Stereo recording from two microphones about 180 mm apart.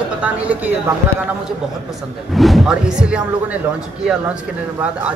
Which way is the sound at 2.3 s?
Centre (ahead or behind).